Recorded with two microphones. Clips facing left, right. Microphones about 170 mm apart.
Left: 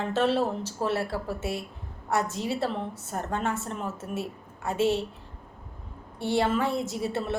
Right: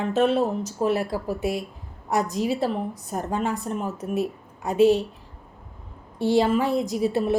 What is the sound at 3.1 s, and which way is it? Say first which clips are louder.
A woman's voice: right 3 dB; 15° right (ahead or behind).